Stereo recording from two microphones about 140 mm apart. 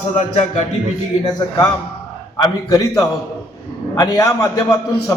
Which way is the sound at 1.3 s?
25° left (ahead or behind).